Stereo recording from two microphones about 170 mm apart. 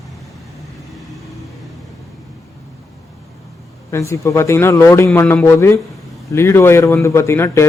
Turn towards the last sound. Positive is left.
turn(degrees=15)  # may be behind; listen again after turning